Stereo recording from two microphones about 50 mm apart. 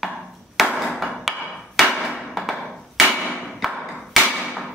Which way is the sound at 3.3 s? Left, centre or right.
Centre.